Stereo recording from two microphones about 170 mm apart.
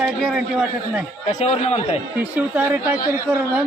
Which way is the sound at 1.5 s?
35° left (ahead or behind).